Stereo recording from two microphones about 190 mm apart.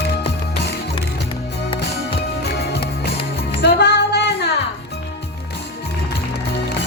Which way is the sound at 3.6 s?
60° left (ahead or behind).